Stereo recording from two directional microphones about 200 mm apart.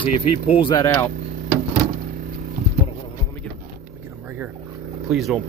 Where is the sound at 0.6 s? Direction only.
25° left (ahead or behind).